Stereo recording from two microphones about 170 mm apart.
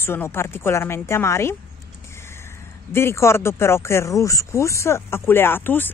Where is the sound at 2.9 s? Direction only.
15° left (ahead or behind).